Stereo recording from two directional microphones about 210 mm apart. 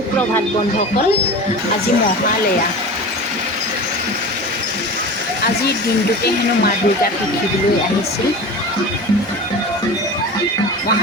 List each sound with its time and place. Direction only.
6.2 s speech: 50° left (ahead or behind)